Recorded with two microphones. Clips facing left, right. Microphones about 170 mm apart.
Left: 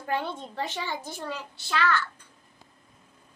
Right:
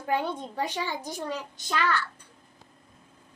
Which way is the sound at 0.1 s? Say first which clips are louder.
Right 2 dB; 15° right (ahead or behind).